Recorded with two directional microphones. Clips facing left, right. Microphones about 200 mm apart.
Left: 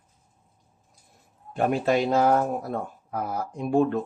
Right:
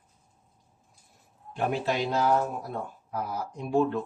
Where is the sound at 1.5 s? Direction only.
50° left (ahead or behind).